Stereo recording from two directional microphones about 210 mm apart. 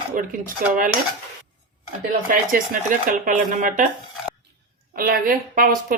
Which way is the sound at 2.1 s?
40° right (ahead or behind).